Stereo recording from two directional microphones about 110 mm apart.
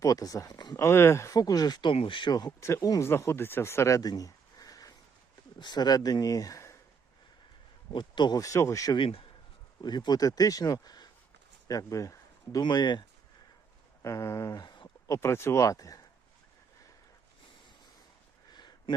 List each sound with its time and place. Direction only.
0.0 s speech: 35° left (ahead or behind)
0.9 s speech: 25° left (ahead or behind); by 2.3 s 50° left (ahead or behind)
2.3 s speech: 30° left (ahead or behind)
7.9 s speech: 45° left (ahead or behind)
9.0 s speech: 55° left (ahead or behind)
9.8 s speech: 40° left (ahead or behind)
14.0 s speech: 25° left (ahead or behind)
18.5 s a sound: 40° left (ahead or behind)